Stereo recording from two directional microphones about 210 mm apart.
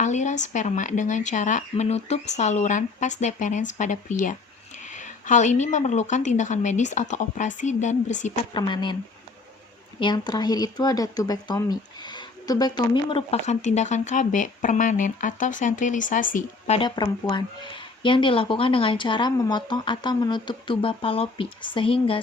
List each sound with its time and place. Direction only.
0.0 s speech: 35° left (ahead or behind)
8.5 s speech: 20° left (ahead or behind)
10.0 s speech: 20° left (ahead or behind)